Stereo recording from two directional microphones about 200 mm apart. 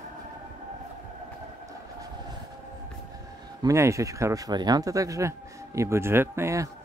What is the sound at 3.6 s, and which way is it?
Speech, 15° right (ahead or behind).